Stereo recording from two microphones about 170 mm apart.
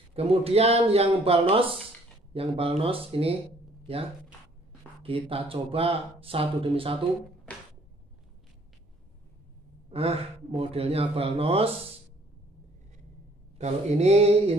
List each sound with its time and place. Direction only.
0.1 s speech: 35° right (ahead or behind)
5.0 s speech: 30° right (ahead or behind)
9.8 s speech: 35° right (ahead or behind)
13.6 s speech: 40° right (ahead or behind)